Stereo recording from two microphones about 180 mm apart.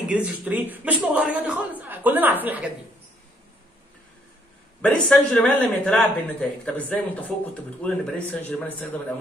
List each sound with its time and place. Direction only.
0.1 s speech: 10° right (ahead or behind)
4.8 s a man's voice: 5° left (ahead or behind)